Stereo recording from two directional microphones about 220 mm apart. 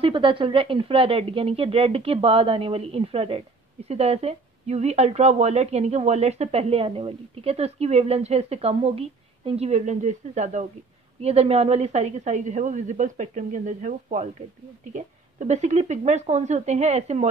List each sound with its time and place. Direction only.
0.0 s a woman's voice: 25° right (ahead or behind)